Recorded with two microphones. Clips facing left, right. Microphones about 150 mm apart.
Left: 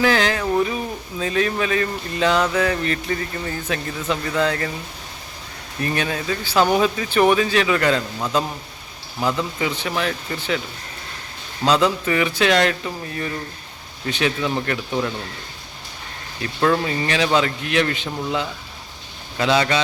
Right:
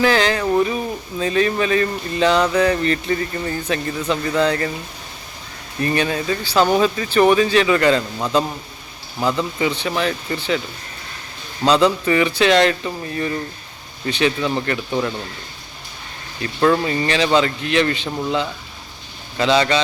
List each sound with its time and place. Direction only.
0.0 s speech: centre (ahead or behind)
5.8 s speech: centre (ahead or behind)
6.4 s speech: 10° left (ahead or behind)
11.6 s speech: centre (ahead or behind)
16.4 s speech: centre (ahead or behind)